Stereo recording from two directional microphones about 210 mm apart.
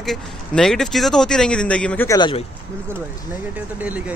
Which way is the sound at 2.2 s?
25° left (ahead or behind).